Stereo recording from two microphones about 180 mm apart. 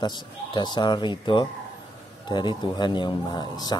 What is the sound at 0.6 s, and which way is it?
Speech, 25° left (ahead or behind).